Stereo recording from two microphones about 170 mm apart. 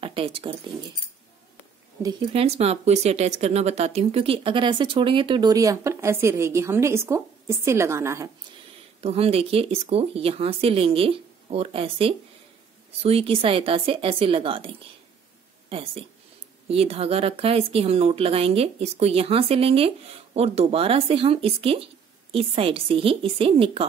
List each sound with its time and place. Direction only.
0.0 s speech: 35° right (ahead or behind)
2.0 s speech: 30° right (ahead or behind); by 8.3 s 15° right (ahead or behind)
9.0 s speech: 35° right (ahead or behind)
15.7 s speech: 35° right (ahead or behind)